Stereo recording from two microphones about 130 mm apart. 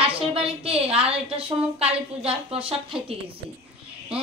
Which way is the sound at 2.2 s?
45° right (ahead or behind).